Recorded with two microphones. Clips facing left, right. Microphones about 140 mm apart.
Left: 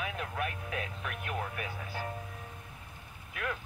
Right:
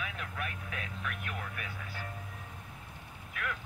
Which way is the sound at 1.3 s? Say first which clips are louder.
Left 5 dB; 35° left (ahead or behind).